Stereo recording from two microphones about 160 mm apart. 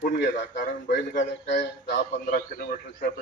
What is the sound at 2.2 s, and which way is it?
Speech, 60° left (ahead or behind).